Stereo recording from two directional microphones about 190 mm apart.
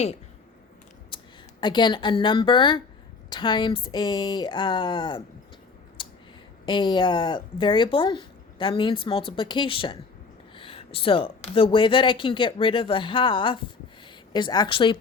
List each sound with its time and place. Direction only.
1.1 s a sound: 25° left (ahead or behind)
1.6 s speech: 25° left (ahead or behind)
6.0 s clicking: 25° left (ahead or behind)
6.7 s speech: 25° left (ahead or behind)